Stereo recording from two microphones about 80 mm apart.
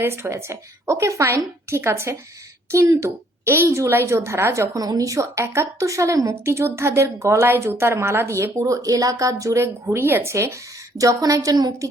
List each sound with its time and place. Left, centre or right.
0.0 s a woman's voice: right
4.7 s a woman's voice: right
5.2 s a woman's voice: right
10.9 s a woman's voice: right